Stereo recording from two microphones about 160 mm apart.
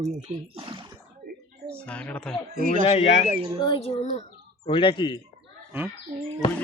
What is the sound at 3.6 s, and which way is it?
Speech, 30° left (ahead or behind).